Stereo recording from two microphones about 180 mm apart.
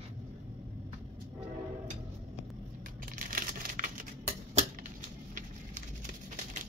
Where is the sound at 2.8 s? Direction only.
50° right (ahead or behind).